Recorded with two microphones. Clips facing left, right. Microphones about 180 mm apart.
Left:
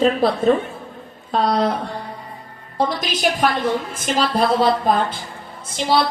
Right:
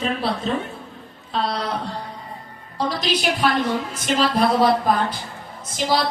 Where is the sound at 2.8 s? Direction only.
50° left (ahead or behind).